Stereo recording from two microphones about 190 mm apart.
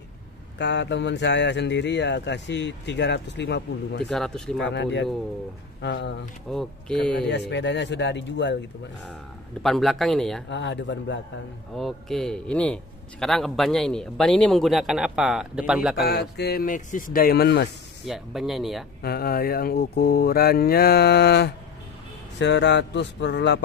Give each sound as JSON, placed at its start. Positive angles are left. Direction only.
{"t": 0.6, "sound": "speech", "side_deg": 65}
{"t": 4.1, "sound": "a man's voice", "side_deg": 5}
{"t": 4.6, "sound": "speech", "side_deg": 65}
{"t": 6.5, "sound": "a man's voice", "side_deg": 5}
{"t": 7.2, "sound": "speech", "side_deg": 65}
{"t": 9.6, "sound": "a man's voice", "side_deg": 0}
{"t": 10.5, "sound": "mantra", "side_deg": 65}
{"t": 11.7, "sound": "a man's voice", "side_deg": 0}
{"t": 16.0, "sound": "speech", "side_deg": 60}
{"t": 18.0, "sound": "a man's voice", "side_deg": 0}
{"t": 19.0, "sound": "mantra", "side_deg": 55}
{"t": 22.4, "sound": "speech", "side_deg": 65}